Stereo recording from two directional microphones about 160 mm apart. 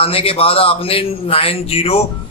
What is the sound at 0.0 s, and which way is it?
Speech, 35° left (ahead or behind).